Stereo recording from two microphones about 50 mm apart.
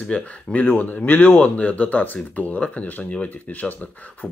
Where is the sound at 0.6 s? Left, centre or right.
Left.